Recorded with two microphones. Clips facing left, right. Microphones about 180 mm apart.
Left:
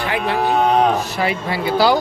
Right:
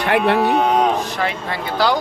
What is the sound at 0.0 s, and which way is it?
Speech, 65° right (ahead or behind).